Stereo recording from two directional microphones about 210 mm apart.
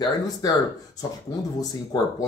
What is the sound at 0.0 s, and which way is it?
Speech, 20° left (ahead or behind).